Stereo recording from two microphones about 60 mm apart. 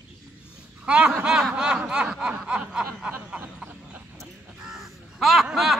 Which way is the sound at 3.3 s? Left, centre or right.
Centre.